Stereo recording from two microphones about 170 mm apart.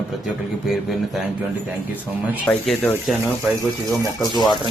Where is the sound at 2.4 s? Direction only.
10° left (ahead or behind).